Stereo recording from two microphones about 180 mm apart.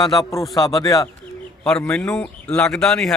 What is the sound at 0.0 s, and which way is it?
Speech, 20° left (ahead or behind).